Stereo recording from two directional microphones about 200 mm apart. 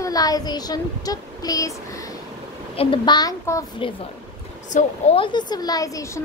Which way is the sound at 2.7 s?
25° left (ahead or behind).